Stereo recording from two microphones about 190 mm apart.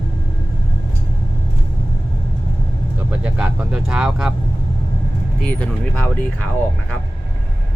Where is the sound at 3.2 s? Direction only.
5° right (ahead or behind).